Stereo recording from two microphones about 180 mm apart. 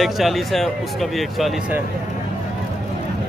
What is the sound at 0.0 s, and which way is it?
Speech, centre (ahead or behind).